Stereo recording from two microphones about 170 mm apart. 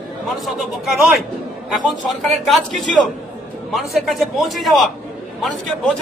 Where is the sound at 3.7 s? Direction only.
Centre (ahead or behind).